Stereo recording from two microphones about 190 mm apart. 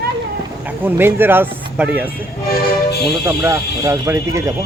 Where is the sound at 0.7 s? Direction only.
10° right (ahead or behind).